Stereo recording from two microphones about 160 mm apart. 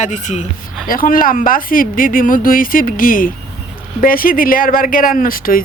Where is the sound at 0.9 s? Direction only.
60° left (ahead or behind).